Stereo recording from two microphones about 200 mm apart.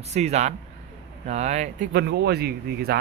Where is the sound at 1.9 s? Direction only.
55° right (ahead or behind).